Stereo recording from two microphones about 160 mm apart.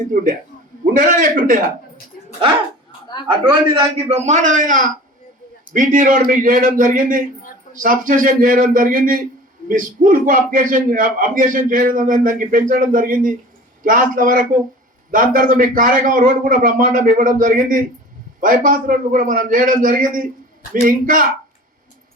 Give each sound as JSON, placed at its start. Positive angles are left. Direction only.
{"t": 0.0, "sound": "a man's voice", "side_deg": -55}
{"t": 3.8, "sound": "a man's voice", "side_deg": -40}
{"t": 4.3, "sound": "a man's voice", "side_deg": -55}